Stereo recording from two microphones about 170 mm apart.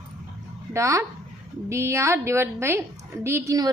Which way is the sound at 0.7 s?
15° right (ahead or behind).